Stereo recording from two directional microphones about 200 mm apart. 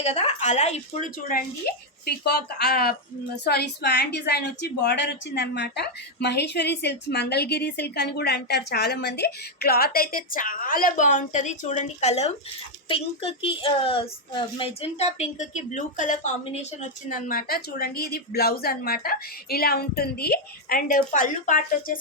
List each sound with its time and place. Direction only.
0.0 s a woman's voice: 35° left (ahead or behind)